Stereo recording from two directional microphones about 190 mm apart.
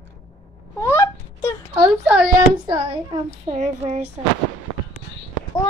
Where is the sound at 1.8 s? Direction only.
5° right (ahead or behind).